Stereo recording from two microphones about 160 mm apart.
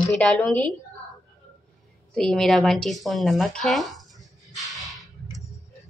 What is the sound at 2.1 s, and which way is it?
Speech, 5° left (ahead or behind).